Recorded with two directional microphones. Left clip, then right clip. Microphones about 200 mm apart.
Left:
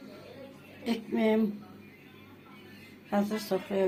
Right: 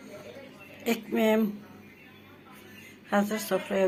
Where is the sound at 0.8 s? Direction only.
10° right (ahead or behind).